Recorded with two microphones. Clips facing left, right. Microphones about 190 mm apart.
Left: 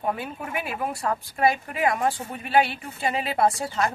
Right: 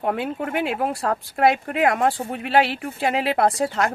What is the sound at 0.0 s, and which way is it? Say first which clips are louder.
Speech: right 5 dB; 70° right (ahead or behind).